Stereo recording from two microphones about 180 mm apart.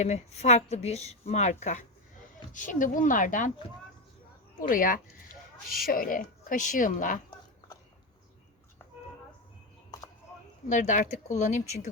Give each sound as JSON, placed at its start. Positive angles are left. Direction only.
{"t": 0.0, "sound": "a woman's voice", "side_deg": 40}
{"t": 4.6, "sound": "speech", "side_deg": 50}
{"t": 10.7, "sound": "speech", "side_deg": 45}